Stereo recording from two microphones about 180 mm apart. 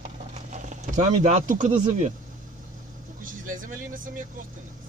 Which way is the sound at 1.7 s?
40° right (ahead or behind).